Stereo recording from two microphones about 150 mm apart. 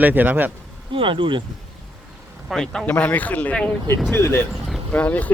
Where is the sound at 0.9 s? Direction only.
35° right (ahead or behind).